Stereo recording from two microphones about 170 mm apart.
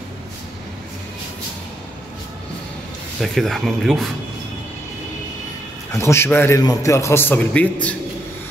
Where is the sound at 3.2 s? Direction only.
Centre (ahead or behind).